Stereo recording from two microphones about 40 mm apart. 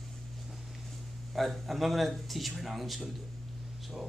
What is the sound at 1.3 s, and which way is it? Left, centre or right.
A man's voice, centre.